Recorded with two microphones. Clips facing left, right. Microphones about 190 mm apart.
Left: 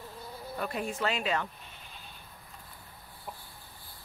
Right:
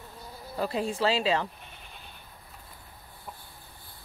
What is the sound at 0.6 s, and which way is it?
Speech, 30° right (ahead or behind).